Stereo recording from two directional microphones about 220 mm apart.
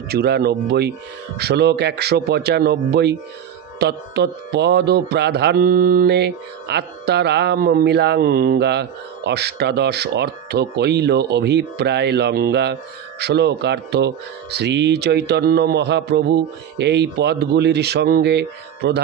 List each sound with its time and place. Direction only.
0.1 s music: 45° right (ahead or behind)